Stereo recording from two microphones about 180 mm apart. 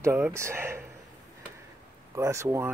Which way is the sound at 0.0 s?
15° right (ahead or behind).